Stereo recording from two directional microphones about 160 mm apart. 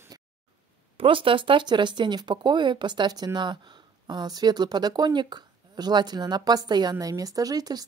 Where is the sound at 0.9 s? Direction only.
35° right (ahead or behind).